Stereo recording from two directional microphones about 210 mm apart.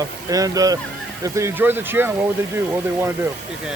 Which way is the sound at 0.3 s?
15° right (ahead or behind).